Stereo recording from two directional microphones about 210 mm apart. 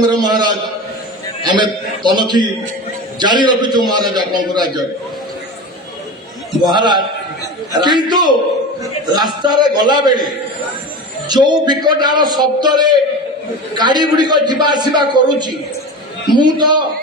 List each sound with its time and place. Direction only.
0.0 s a man's voice: 20° right (ahead or behind)
6.7 s a man's voice: 20° right (ahead or behind)
11.2 s a man's voice: 20° right (ahead or behind)